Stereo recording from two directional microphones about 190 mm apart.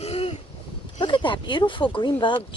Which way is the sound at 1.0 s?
25° left (ahead or behind).